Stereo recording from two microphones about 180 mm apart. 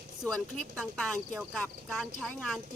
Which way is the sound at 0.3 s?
5° left (ahead or behind).